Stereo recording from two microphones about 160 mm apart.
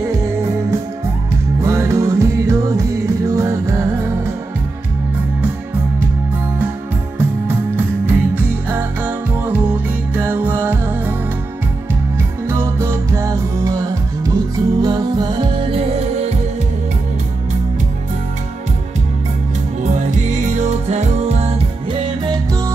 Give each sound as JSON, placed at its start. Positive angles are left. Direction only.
{"t": 1.6, "sound": "music", "side_deg": -15}
{"t": 7.2, "sound": "music", "side_deg": -15}
{"t": 12.4, "sound": "music", "side_deg": -15}
{"t": 19.8, "sound": "music", "side_deg": -50}
{"t": 22.2, "sound": "music", "side_deg": -25}